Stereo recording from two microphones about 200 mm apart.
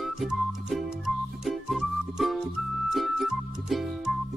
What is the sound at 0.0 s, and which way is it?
Music, centre (ahead or behind).